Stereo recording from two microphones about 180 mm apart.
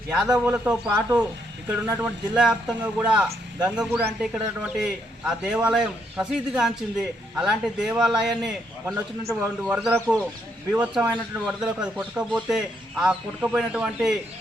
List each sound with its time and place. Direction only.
0.3 s speech: 5° right (ahead or behind)
9.2 s speech: 15° right (ahead or behind)